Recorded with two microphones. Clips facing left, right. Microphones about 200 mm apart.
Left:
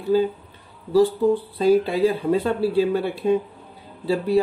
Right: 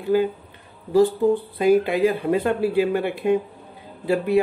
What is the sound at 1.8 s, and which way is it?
Speech, 55° right (ahead or behind).